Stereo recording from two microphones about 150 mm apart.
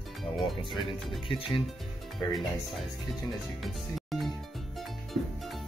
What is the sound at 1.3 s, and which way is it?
Speech, 35° left (ahead or behind).